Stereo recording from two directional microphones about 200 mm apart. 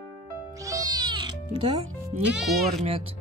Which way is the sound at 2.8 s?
30° right (ahead or behind).